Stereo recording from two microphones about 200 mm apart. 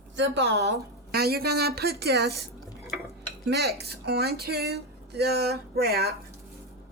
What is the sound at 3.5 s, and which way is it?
Speech, 55° right (ahead or behind).